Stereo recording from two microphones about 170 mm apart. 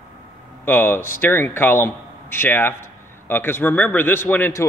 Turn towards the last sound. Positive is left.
turn(degrees=15)  # may be behind; listen again after turning